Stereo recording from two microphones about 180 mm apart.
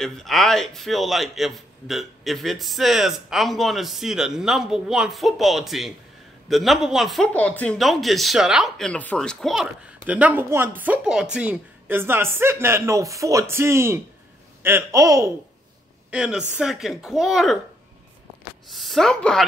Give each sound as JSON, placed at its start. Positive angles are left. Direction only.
{"t": 0.0, "sound": "a man's voice", "side_deg": 0}
{"t": 16.1, "sound": "a man's voice", "side_deg": -5}
{"t": 18.7, "sound": "a man's voice", "side_deg": 0}